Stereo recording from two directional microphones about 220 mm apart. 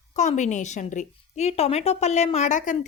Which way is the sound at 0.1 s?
35° left (ahead or behind).